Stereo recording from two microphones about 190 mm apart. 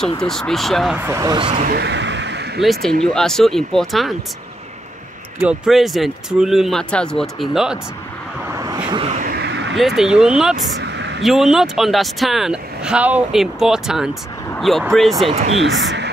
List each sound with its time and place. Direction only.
0.2 s speech: centre (ahead or behind)
0.9 s speech: 15° right (ahead or behind)
1.5 s speech: 40° right (ahead or behind)
1.8 s a sound: 65° right (ahead or behind)
2.6 s speech: centre (ahead or behind)
5.4 s speech: 5° right (ahead or behind)
8.5 s vehicle: 20° right (ahead or behind)
9.1 s a sound: 50° right (ahead or behind); by 9.8 s 65° right (ahead or behind)
9.8 s speech: centre (ahead or behind)
10.8 s a sound: 65° right (ahead or behind)
11.2 s speech: centre (ahead or behind)
15.2 s speech: 35° right (ahead or behind)
15.6 s speech: 65° right (ahead or behind)